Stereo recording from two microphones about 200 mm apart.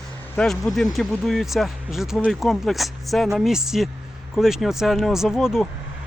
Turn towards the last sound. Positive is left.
turn(degrees=0)  # may be behind; listen again after turning